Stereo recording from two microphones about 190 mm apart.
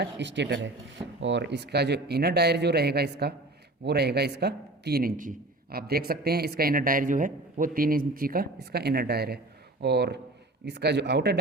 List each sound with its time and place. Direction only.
0.0 s a man's voice: 70° right (ahead or behind)